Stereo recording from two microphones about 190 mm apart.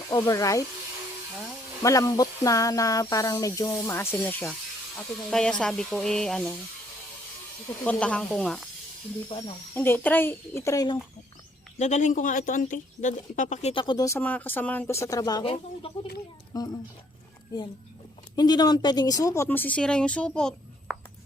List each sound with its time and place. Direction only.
0.1 s speech: 20° left (ahead or behind)
1.8 s speech: 15° left (ahead or behind)
7.9 s speech: 5° left (ahead or behind)
9.7 s speech: 10° left (ahead or behind)
11.8 s speech: 40° left (ahead or behind)
16.5 s speech: 20° left (ahead or behind)
18.3 s speech: 20° left (ahead or behind); by 20.9 s 5° left (ahead or behind)